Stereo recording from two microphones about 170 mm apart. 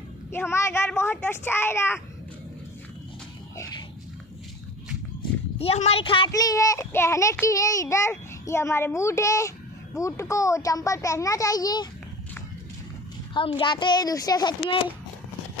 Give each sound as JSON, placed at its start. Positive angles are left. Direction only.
{"t": 0.3, "sound": "a child's voice", "side_deg": 15}
{"t": 3.5, "sound": "a sound", "side_deg": 20}
{"t": 5.6, "sound": "a child's voice", "side_deg": 35}
{"t": 13.3, "sound": "a child's voice", "side_deg": 30}